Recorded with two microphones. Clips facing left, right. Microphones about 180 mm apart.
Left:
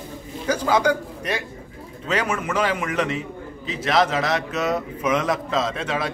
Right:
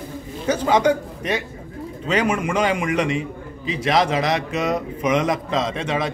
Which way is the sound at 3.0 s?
5° left (ahead or behind).